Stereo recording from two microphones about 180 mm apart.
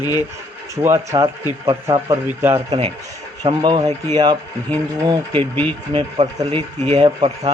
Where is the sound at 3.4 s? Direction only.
25° right (ahead or behind).